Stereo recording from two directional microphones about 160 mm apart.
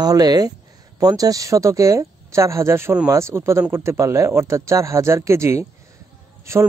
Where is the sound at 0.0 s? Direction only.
25° right (ahead or behind).